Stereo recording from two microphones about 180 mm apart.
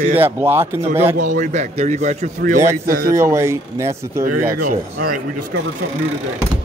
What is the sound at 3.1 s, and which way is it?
Speech, 15° right (ahead or behind).